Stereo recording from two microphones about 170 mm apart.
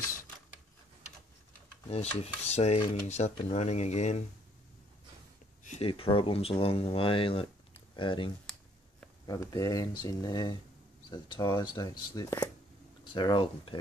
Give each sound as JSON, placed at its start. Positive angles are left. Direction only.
{"t": 1.9, "sound": "dishes", "side_deg": 40}
{"t": 5.6, "sound": "a sound", "side_deg": 45}
{"t": 5.9, "sound": "dishes", "side_deg": 30}
{"t": 7.9, "sound": "speech", "side_deg": 30}